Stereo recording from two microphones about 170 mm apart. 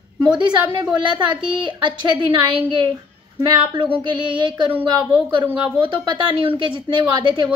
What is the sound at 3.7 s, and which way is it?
Speech, 30° right (ahead or behind).